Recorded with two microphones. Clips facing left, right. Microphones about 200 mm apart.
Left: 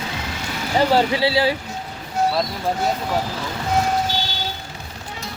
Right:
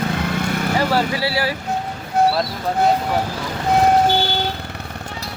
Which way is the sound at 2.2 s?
55° right (ahead or behind).